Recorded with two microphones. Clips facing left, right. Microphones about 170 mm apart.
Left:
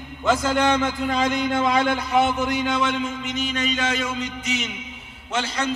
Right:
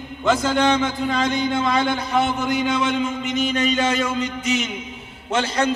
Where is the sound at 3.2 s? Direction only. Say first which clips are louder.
Right 5 dB; 55° right (ahead or behind).